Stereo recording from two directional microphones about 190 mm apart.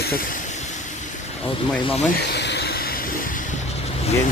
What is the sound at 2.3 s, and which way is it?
Vehicle, 65° left (ahead or behind).